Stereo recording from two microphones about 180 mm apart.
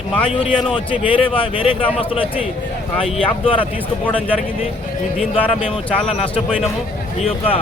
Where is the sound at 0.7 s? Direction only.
30° left (ahead or behind).